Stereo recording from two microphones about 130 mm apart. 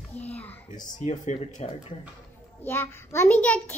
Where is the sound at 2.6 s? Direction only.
15° left (ahead or behind).